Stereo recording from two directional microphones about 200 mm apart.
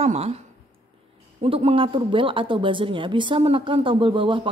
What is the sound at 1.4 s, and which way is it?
Speech, 30° right (ahead or behind).